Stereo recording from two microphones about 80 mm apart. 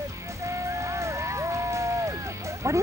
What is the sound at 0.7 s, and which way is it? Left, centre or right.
Vehicle, right.